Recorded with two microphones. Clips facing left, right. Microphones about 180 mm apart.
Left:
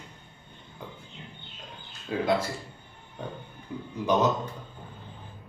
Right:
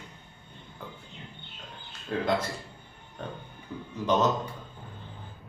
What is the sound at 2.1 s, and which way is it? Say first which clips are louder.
Speech: left 1 dB; 5° left (ahead or behind).